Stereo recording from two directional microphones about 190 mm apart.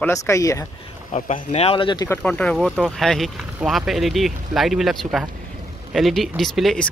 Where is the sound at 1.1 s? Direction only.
35° left (ahead or behind); by 2.2 s 20° left (ahead or behind).